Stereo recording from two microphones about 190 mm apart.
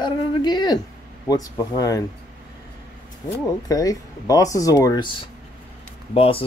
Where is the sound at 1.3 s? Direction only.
20° left (ahead or behind).